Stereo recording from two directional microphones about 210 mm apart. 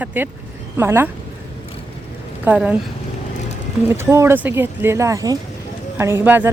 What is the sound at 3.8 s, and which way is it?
Speech, 10° right (ahead or behind).